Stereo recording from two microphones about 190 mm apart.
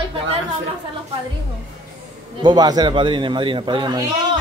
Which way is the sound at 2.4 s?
20° right (ahead or behind).